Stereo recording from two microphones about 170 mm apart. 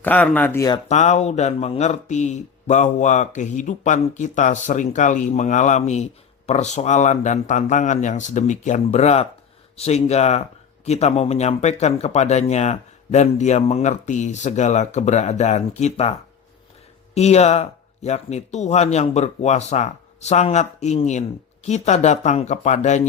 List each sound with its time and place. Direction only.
0.0 s speech: 10° left (ahead or behind)
0.9 s speech: 40° left (ahead or behind)
17.2 s speech: 40° left (ahead or behind)